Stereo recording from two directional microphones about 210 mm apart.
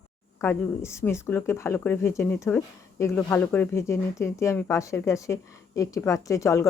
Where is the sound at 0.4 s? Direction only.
15° left (ahead or behind).